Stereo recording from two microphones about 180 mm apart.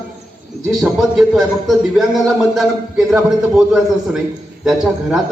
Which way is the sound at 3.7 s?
5° right (ahead or behind).